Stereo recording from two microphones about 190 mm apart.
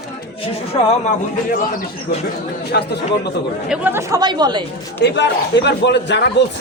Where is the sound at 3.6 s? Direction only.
10° right (ahead or behind).